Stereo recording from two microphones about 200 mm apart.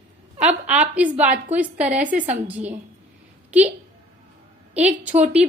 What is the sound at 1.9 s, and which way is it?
Speech, 40° right (ahead or behind).